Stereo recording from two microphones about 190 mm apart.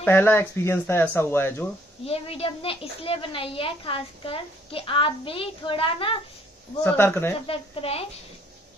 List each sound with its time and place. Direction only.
0.0 s speech: 10° left (ahead or behind)
2.0 s a woman's voice: 30° left (ahead or behind)
6.8 s speech: 10° left (ahead or behind)
7.4 s a woman's voice: 30° left (ahead or behind)